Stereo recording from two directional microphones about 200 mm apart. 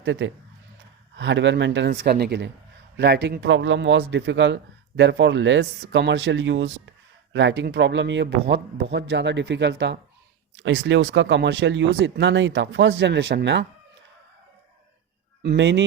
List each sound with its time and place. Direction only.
0.0 s a man's voice: 65° right (ahead or behind)
15.4 s a man's voice: 60° right (ahead or behind)